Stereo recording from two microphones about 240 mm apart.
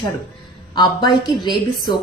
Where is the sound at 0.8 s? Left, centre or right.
Centre.